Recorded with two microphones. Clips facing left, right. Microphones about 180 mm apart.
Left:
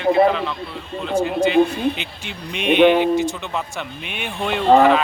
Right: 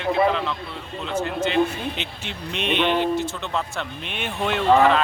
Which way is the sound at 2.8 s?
50° left (ahead or behind).